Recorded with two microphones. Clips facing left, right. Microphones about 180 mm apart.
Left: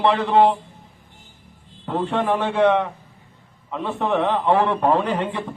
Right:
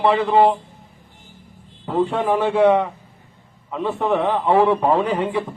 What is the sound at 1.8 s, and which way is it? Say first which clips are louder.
A man's voice: right 2 dB; 5° right (ahead or behind).